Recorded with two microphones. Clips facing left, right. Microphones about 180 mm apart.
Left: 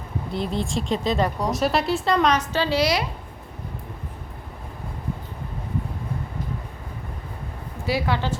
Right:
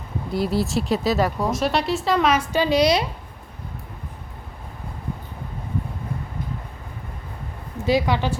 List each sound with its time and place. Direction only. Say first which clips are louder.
0.3 s speech: right 4 dB; 5° right (ahead or behind)
7.9 s a woman's voice: right 4 dB; 15° right (ahead or behind)